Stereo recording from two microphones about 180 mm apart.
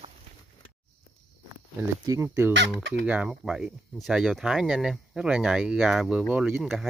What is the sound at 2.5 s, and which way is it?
Speech, 75° right (ahead or behind).